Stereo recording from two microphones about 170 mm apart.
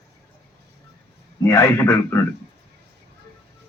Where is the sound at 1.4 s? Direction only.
15° left (ahead or behind).